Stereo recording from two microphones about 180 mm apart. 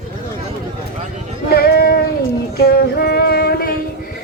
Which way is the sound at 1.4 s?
55° left (ahead or behind).